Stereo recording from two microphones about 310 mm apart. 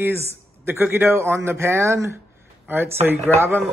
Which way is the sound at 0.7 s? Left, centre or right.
Centre.